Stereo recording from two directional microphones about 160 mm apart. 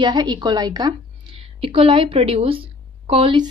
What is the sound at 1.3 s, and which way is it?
A woman's voice, 35° right (ahead or behind).